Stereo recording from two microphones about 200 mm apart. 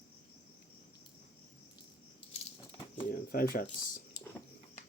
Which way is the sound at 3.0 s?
45° left (ahead or behind).